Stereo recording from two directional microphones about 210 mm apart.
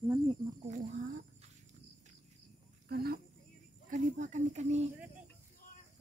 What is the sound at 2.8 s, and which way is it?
Speech, 50° right (ahead or behind).